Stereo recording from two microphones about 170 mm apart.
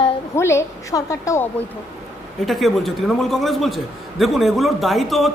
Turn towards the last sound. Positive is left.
turn(degrees=0)  # may be behind; listen again after turning